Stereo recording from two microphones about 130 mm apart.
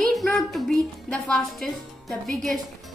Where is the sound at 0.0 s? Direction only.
5° left (ahead or behind).